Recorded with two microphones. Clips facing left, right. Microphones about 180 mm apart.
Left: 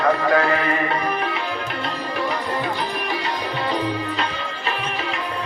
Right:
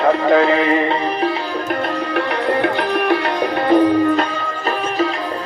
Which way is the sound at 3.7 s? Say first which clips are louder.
Right 14 dB; 50° right (ahead or behind).